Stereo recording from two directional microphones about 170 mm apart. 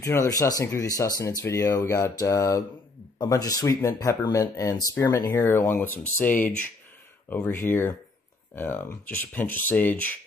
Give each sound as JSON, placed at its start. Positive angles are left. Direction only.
{"t": 0.0, "sound": "speech", "side_deg": 15}